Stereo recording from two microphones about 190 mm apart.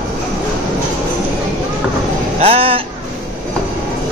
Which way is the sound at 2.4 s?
30° right (ahead or behind).